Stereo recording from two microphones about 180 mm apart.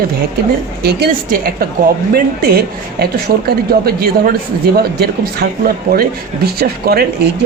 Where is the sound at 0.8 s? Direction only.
60° right (ahead or behind).